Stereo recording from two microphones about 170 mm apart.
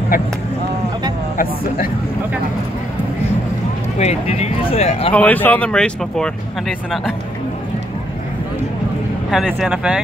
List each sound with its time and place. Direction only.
4.0 s speech: 40° left (ahead or behind)
5.1 s speech: 10° left (ahead or behind)
9.3 s speech: centre (ahead or behind)